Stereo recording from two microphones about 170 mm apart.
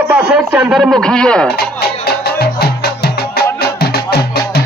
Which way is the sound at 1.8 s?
70° left (ahead or behind).